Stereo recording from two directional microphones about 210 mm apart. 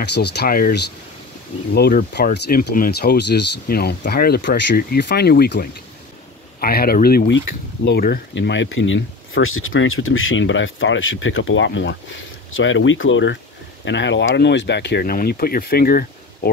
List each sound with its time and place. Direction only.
0.0 s speech: 55° left (ahead or behind)